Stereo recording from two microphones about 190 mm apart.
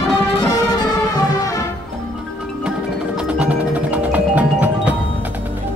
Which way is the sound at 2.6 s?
5° right (ahead or behind).